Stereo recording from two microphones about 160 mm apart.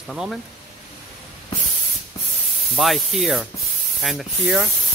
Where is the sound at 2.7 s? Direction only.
Centre (ahead or behind).